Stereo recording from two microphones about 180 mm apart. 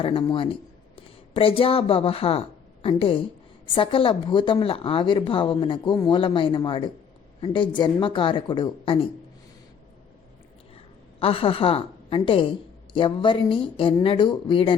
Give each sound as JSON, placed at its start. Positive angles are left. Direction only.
{"t": 0.0, "sound": "a woman's voice", "side_deg": 30}
{"t": 11.2, "sound": "a woman's voice", "side_deg": 30}